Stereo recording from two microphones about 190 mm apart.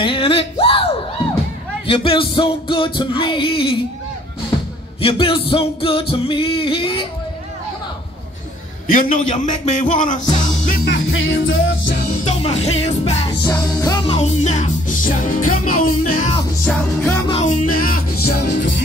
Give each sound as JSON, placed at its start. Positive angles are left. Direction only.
{"t": 0.0, "sound": "a sound", "side_deg": 30}
{"t": 1.9, "sound": "music", "side_deg": 25}
{"t": 5.0, "sound": "music", "side_deg": 30}
{"t": 8.8, "sound": "music", "side_deg": 45}
{"t": 10.2, "sound": "music", "side_deg": 20}
{"t": 10.9, "sound": "music", "side_deg": 90}
{"t": 12.3, "sound": "music", "side_deg": 30}
{"t": 13.5, "sound": "music", "side_deg": 15}
{"t": 14.1, "sound": "music", "side_deg": 35}
{"t": 16.6, "sound": "music", "side_deg": 10}
{"t": 17.5, "sound": "music", "side_deg": 50}